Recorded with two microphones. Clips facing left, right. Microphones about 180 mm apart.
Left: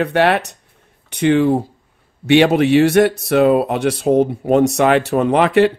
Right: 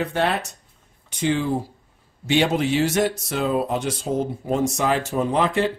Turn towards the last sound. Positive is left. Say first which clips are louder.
# left 8 dB
turn(degrees=70)  # may be behind; listen again after turning